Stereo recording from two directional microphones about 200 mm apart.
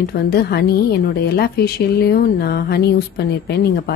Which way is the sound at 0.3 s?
50° left (ahead or behind).